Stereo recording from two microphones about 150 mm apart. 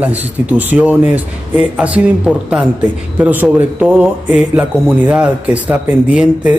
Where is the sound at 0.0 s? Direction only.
10° right (ahead or behind).